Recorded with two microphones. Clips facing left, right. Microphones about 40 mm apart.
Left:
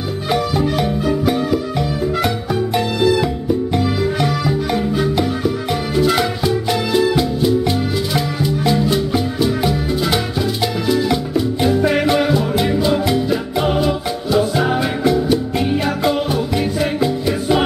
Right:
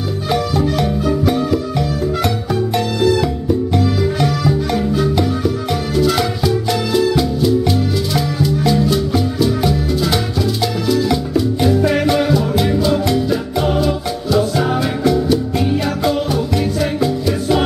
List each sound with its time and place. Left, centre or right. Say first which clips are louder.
0.3 s music: even; centre